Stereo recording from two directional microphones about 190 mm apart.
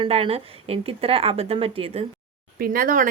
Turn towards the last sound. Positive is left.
turn(degrees=-45)  # may be behind; listen again after turning